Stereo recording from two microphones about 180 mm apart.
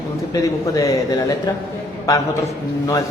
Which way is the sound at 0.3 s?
20° left (ahead or behind).